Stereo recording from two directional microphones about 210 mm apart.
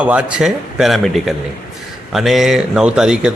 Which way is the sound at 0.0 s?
5° right (ahead or behind).